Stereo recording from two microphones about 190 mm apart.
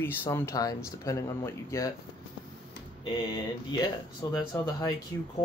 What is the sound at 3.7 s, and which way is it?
Speech, 20° left (ahead or behind).